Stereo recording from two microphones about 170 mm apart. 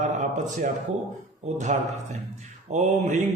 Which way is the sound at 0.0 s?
45° right (ahead or behind).